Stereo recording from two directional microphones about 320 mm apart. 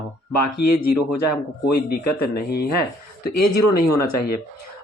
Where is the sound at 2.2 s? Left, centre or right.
Left.